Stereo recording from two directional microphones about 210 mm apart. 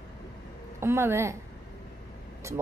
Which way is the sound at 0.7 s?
10° right (ahead or behind).